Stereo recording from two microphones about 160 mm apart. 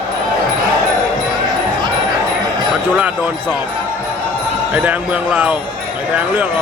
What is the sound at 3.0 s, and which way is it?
Speech, 10° right (ahead or behind).